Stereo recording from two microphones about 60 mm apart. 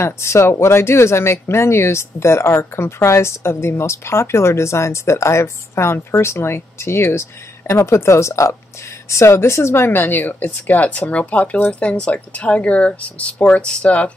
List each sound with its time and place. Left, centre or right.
0.0 s speech: left